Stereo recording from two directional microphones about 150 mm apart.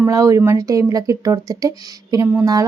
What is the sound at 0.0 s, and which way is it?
Speech, 20° right (ahead or behind).